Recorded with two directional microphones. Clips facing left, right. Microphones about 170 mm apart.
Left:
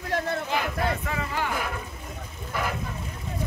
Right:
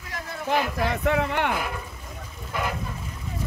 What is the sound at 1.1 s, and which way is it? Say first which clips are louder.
Speech: right 6 dB; 70° right (ahead or behind).